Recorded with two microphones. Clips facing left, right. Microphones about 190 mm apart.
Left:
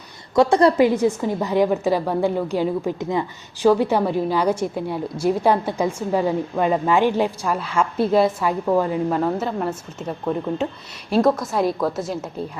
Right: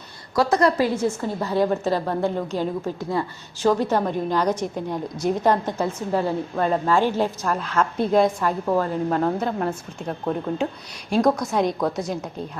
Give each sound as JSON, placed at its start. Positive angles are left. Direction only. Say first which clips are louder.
{"t": 0.3, "sound": "a woman's voice", "louder": "left 4 dB", "side_deg": 30}
{"t": 0.9, "sound": "a woman's voice", "louder": "left 4 dB", "side_deg": 15}